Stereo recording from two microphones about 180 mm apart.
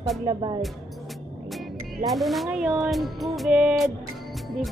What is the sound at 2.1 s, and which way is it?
Speech, centre (ahead or behind).